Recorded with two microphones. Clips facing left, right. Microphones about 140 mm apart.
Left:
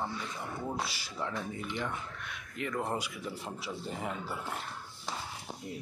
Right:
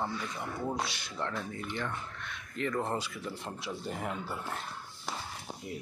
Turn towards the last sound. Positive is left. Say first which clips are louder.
# right 1 dB
turn(degrees=0)  # may be behind; listen again after turning